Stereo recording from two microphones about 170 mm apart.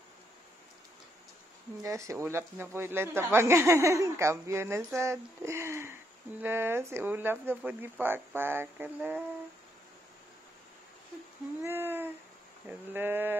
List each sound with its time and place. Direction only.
1.8 s speech: 20° right (ahead or behind)
11.6 s a sound: 10° right (ahead or behind)
12.6 s speech: 10° right (ahead or behind)